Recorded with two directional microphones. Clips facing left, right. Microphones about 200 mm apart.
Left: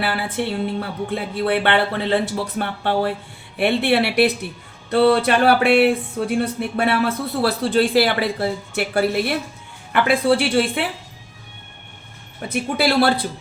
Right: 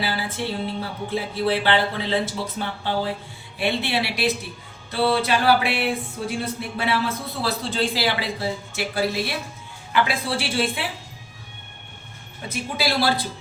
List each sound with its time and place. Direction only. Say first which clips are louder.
0.0 s music: left 4 dB; 60° left (ahead or behind)
12.5 s music: left 6 dB; 60° left (ahead or behind)